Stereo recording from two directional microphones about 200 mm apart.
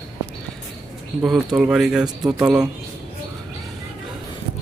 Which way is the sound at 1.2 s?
Centre (ahead or behind).